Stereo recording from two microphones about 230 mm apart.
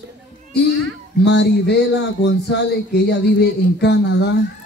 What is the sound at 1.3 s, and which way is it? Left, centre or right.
Speech, left.